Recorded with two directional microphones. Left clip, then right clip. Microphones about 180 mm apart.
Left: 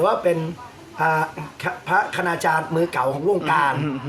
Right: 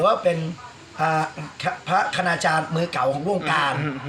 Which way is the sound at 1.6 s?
15° left (ahead or behind).